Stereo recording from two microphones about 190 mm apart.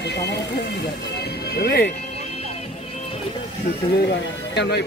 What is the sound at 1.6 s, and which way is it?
Speech, 55° left (ahead or behind).